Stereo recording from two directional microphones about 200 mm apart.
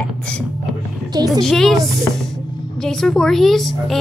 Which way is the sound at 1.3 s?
Centre (ahead or behind).